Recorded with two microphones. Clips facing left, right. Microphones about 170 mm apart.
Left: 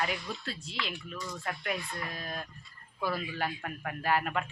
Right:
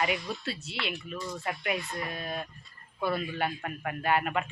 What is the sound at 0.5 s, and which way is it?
Speech, 70° right (ahead or behind).